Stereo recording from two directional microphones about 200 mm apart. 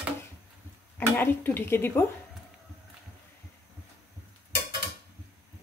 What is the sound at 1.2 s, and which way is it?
Speech, 10° left (ahead or behind).